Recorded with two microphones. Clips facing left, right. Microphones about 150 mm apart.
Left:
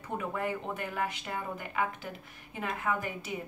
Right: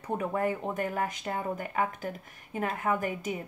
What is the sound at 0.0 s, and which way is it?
A woman's voice, 40° right (ahead or behind).